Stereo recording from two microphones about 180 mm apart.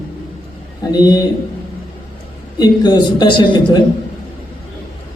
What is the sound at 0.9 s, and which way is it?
Speech, 20° left (ahead or behind).